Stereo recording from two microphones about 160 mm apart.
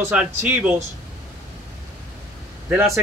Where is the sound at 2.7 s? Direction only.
15° right (ahead or behind).